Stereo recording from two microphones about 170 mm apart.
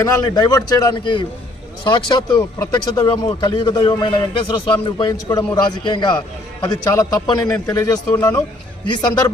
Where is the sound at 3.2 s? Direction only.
30° left (ahead or behind).